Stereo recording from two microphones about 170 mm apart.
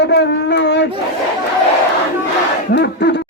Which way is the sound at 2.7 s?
75° left (ahead or behind).